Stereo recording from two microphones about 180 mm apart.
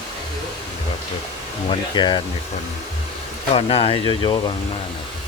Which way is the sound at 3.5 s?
30° left (ahead or behind).